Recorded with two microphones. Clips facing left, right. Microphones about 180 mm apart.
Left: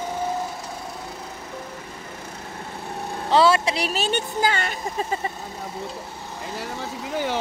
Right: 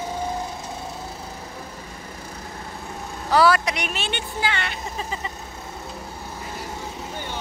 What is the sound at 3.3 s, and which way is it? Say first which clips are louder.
Speech: even; 25° left (ahead or behind).